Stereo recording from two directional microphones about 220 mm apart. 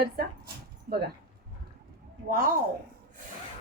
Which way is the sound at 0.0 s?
45° right (ahead or behind).